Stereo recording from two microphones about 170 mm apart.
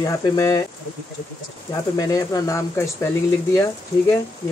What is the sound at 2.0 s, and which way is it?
Speech, 20° left (ahead or behind).